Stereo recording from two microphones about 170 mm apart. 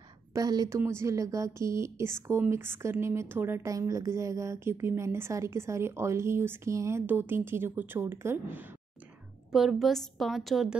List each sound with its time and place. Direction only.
0.3 s a woman's voice: 25° right (ahead or behind)
9.5 s a woman's voice: centre (ahead or behind)